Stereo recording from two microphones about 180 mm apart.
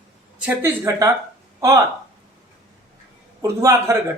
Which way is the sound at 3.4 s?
15° right (ahead or behind).